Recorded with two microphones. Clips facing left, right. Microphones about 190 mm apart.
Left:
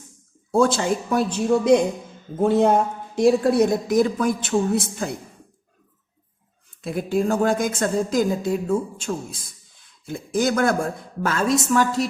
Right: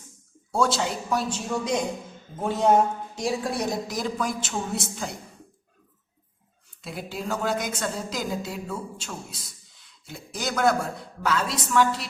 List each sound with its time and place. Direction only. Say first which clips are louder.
0.5 s speech: left 6 dB; 50° left (ahead or behind)
6.8 s speech: left 10 dB; 50° left (ahead or behind)